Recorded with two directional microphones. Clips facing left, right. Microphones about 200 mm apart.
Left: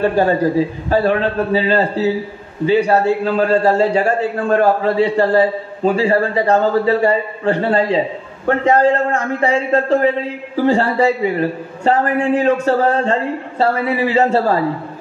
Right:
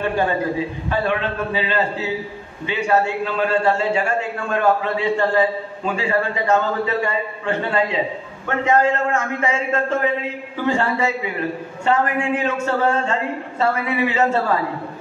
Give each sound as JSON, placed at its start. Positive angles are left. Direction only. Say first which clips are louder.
{"t": 0.0, "sound": "a man's voice", "louder": "left 6 dB", "side_deg": 40}